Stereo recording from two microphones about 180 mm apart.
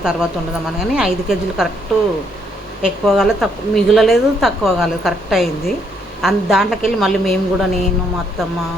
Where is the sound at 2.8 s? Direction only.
Centre (ahead or behind).